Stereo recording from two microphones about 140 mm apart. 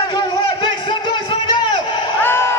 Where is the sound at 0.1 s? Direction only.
30° left (ahead or behind).